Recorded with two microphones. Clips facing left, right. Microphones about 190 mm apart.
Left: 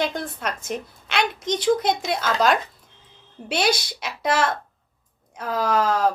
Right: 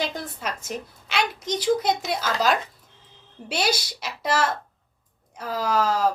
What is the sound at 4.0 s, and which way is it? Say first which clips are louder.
A woman's voice: left 2 dB; 55° left (ahead or behind).